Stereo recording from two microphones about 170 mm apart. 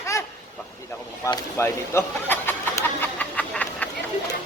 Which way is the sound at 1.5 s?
15° left (ahead or behind).